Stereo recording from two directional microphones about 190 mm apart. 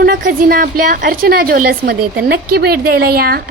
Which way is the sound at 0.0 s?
50° right (ahead or behind).